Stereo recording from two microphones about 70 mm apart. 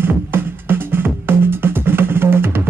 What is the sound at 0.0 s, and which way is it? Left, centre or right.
Music, right.